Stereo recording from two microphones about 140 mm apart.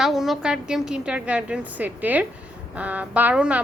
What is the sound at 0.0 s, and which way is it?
A woman's voice, centre (ahead or behind).